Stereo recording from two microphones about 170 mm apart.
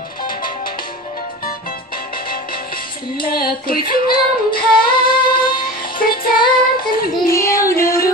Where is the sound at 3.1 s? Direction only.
60° left (ahead or behind).